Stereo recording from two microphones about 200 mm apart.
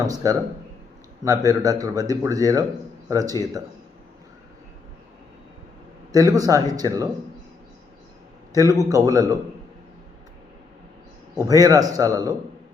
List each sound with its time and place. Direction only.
0.0 s speech: 15° right (ahead or behind)
6.1 s speech: 15° right (ahead or behind)
8.8 s speech: 15° right (ahead or behind)
11.3 s speech: 15° right (ahead or behind)